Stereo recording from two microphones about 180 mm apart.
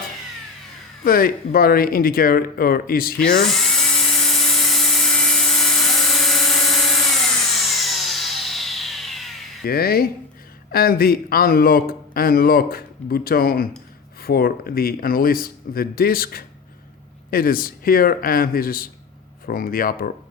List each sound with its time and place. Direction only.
1.0 s speech: 55° left (ahead or behind)
3.4 s dental drill: centre (ahead or behind)
7.7 s a sound: centre (ahead or behind)
9.6 s speech: 55° left (ahead or behind)